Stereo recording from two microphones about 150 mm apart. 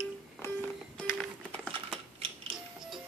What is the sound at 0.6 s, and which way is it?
Music, 5° left (ahead or behind).